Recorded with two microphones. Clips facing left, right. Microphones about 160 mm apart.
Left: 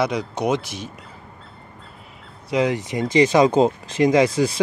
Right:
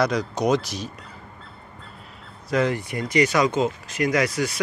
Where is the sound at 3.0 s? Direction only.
30° left (ahead or behind).